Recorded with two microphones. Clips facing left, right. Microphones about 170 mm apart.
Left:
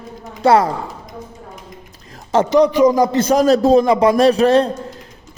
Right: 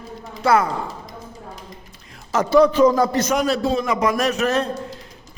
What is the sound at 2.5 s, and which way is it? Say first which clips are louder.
Speech: even; 15° left (ahead or behind).